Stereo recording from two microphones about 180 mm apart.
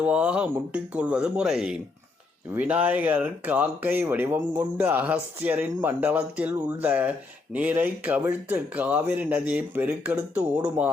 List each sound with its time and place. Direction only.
0.0 s speech: 5° right (ahead or behind)